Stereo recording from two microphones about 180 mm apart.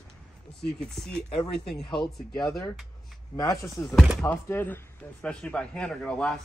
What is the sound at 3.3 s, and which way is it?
Speech, 20° left (ahead or behind).